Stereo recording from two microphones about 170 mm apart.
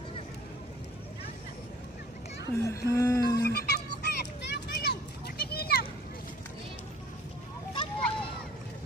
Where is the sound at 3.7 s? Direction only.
75° left (ahead or behind).